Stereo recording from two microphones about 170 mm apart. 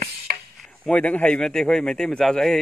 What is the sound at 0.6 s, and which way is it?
Speech, 5° left (ahead or behind).